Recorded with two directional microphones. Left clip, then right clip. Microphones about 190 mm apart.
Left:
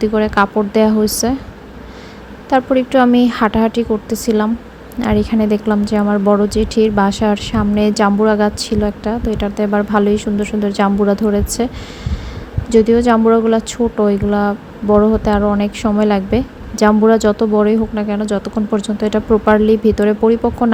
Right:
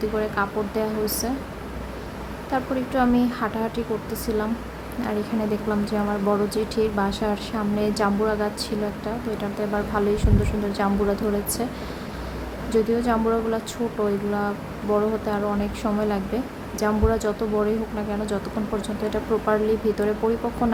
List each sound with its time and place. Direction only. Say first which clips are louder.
0.0 s a woman's voice: left 10 dB; 35° left (ahead or behind)
2.5 s a woman's voice: left 13 dB; 35° left (ahead or behind)
12.7 s a woman's voice: left 11 dB; 35° left (ahead or behind)